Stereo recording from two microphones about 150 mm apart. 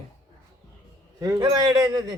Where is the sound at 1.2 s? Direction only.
25° right (ahead or behind).